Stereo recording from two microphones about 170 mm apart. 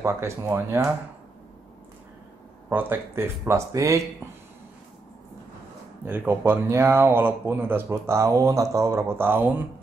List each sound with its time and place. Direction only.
0.0 s speech: 15° right (ahead or behind)
2.7 s speech: 10° right (ahead or behind)
6.0 s speech: 10° right (ahead or behind)